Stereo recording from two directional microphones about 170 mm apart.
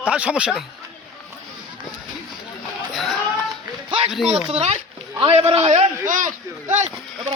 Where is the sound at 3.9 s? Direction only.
30° right (ahead or behind).